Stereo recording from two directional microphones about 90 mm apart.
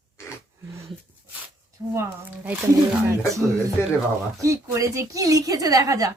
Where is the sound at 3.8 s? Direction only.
25° left (ahead or behind).